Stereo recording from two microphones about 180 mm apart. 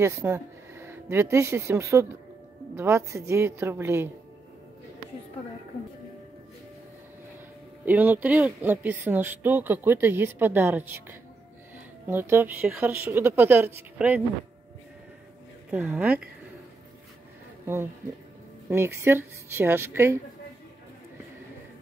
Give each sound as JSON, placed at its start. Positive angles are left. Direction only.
{"t": 0.0, "sound": "speech", "side_deg": -15}
{"t": 7.8, "sound": "speech", "side_deg": -10}
{"t": 15.7, "sound": "speech", "side_deg": -10}
{"t": 18.7, "sound": "speech", "side_deg": -15}